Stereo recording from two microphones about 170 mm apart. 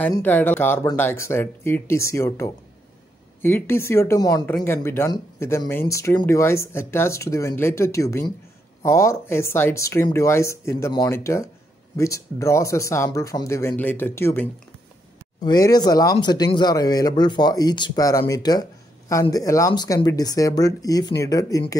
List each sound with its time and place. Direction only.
0.1 s speech: 10° left (ahead or behind)
15.4 s speech: 25° left (ahead or behind)